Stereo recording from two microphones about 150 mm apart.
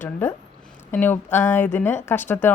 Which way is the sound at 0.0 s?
15° left (ahead or behind).